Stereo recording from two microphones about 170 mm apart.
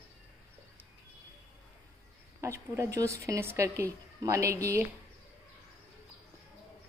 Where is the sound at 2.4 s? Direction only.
15° right (ahead or behind).